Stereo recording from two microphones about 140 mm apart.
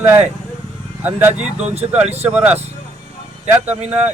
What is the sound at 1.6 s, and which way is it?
Speech, 50° right (ahead or behind).